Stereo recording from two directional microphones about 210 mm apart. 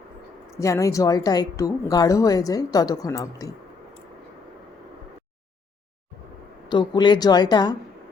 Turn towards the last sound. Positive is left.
turn(degrees=20)  # may be behind; listen again after turning